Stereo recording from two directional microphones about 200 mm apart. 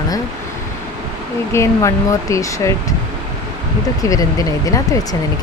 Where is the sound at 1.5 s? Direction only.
15° left (ahead or behind).